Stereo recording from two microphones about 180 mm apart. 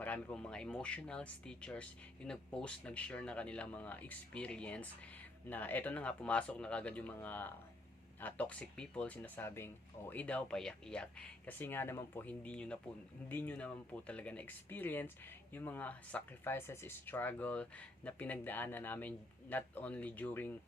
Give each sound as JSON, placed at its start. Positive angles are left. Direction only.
{"t": 0.0, "sound": "speech", "side_deg": 10}